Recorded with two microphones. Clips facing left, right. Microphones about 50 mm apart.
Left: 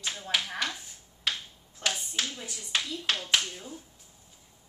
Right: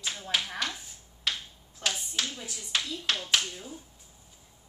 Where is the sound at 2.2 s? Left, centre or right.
Centre.